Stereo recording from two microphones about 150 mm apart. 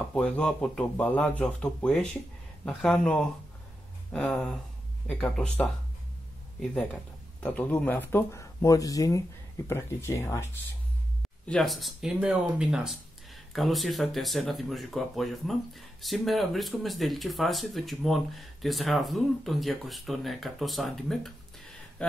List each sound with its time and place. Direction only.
0.1 s speech: 10° left (ahead or behind)
11.2 s speech: 5° left (ahead or behind)